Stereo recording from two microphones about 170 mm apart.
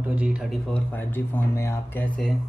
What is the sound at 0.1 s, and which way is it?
Speech, 5° right (ahead or behind).